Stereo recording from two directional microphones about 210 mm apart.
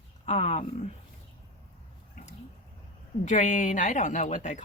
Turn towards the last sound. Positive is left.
turn(degrees=35)  # may be behind; listen again after turning